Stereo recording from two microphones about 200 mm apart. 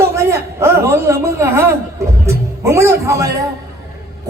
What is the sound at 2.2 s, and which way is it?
Music, 15° right (ahead or behind).